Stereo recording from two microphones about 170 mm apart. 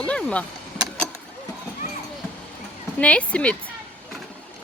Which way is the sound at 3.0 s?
10° left (ahead or behind).